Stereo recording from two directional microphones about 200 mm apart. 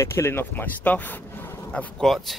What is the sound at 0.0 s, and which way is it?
Speech, 15° left (ahead or behind).